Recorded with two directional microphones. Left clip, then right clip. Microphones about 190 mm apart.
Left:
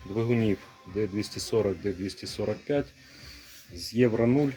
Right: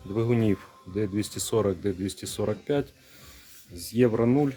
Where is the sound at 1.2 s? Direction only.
40° right (ahead or behind).